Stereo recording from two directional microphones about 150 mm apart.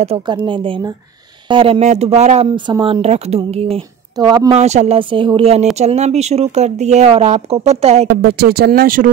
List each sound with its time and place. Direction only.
0.3 s speech: 35° right (ahead or behind)
2.4 s speech: 30° right (ahead or behind)
4.2 s a woman's voice: 25° right (ahead or behind)
4.6 s speech: 50° right (ahead or behind)
8.2 s speech: 90° right; by 9.1 s 70° right (ahead or behind)